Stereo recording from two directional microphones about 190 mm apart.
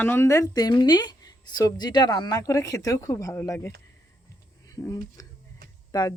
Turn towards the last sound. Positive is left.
turn(degrees=20)  # may be behind; listen again after turning